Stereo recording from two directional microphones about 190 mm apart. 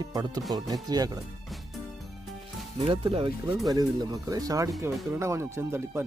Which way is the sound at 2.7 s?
30° right (ahead or behind).